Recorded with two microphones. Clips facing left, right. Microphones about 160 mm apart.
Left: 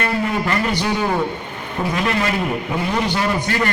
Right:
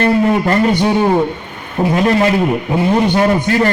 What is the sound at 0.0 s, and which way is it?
A man's voice, 35° right (ahead or behind).